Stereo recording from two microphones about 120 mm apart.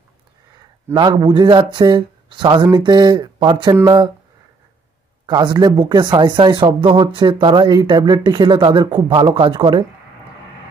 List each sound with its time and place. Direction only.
0.9 s speech: 40° right (ahead or behind)
5.2 s speech: 40° right (ahead or behind)